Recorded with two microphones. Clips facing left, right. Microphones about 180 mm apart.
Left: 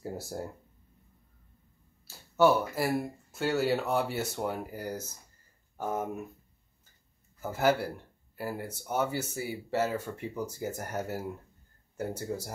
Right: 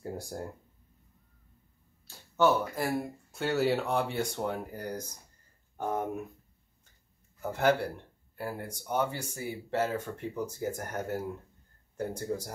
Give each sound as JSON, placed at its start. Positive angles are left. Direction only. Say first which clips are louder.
{"t": 0.0, "sound": "a sound", "louder": "left 1 dB", "side_deg": 5}
{"t": 2.0, "sound": "speech", "louder": "left 2 dB", "side_deg": 10}
{"t": 7.3, "sound": "speech", "louder": "even", "side_deg": 5}